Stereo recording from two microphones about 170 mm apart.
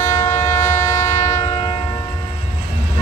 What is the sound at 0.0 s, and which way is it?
Train, 45° left (ahead or behind).